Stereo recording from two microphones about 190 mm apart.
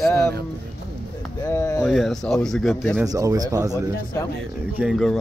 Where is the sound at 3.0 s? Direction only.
20° right (ahead or behind).